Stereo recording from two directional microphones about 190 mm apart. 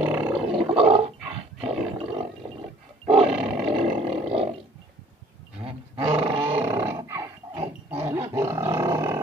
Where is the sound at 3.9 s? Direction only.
30° right (ahead or behind).